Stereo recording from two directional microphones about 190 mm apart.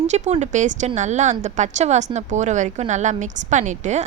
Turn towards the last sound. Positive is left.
turn(degrees=-40)  # may be behind; listen again after turning